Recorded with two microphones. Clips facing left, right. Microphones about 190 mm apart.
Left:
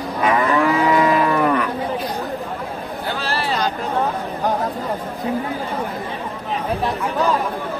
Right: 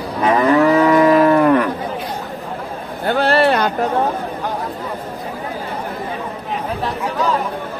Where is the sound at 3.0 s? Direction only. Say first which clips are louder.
Right 11 dB; 60° right (ahead or behind).